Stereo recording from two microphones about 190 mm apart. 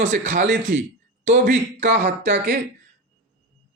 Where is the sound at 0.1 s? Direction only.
40° right (ahead or behind).